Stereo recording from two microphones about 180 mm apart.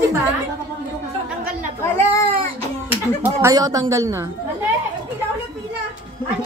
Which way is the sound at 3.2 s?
20° right (ahead or behind).